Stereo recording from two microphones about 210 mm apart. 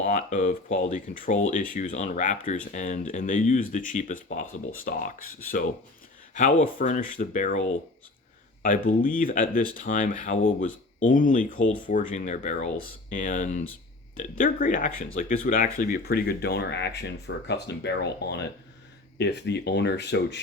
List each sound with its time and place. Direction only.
0.0 s speech: 35° left (ahead or behind); by 20.4 s 55° left (ahead or behind)